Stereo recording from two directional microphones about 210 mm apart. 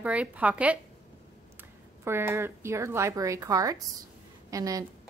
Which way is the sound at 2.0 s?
10° right (ahead or behind).